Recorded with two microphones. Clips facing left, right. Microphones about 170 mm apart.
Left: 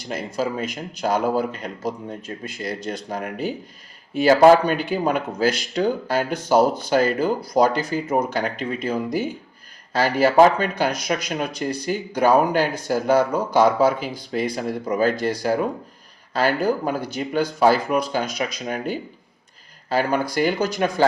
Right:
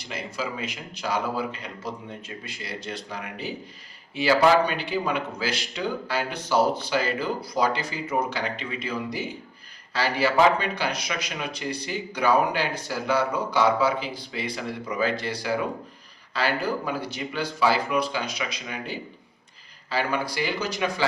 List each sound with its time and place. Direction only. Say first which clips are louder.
0.0 s speech: left 7 dB; 45° left (ahead or behind)